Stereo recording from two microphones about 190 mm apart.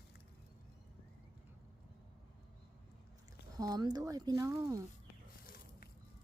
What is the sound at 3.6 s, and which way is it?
Speech, 20° right (ahead or behind).